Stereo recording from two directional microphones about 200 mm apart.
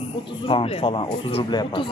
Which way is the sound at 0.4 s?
30° left (ahead or behind).